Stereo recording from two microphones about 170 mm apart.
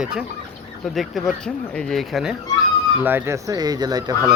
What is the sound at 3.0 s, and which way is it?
Speech, 15° right (ahead or behind).